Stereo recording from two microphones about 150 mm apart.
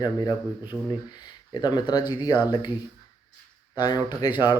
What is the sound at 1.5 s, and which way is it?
Speech, 30° left (ahead or behind).